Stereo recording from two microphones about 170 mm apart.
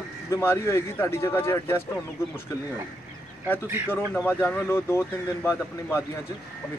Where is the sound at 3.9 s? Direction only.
10° left (ahead or behind).